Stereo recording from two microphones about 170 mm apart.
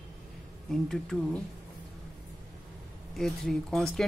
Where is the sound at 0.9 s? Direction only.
5° left (ahead or behind).